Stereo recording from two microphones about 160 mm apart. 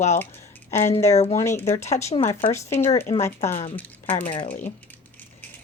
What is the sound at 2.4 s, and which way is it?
Speech, 15° left (ahead or behind).